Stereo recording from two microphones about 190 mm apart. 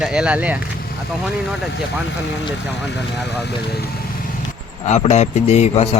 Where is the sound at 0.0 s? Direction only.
5° right (ahead or behind).